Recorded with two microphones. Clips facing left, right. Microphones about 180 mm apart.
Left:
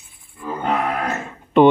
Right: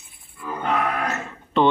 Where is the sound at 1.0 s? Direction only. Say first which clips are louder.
Left 2 dB; 15° left (ahead or behind).